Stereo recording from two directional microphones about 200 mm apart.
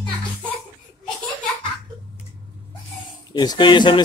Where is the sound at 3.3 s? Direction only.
20° left (ahead or behind).